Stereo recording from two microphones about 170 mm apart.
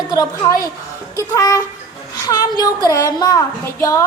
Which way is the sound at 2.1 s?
20° left (ahead or behind).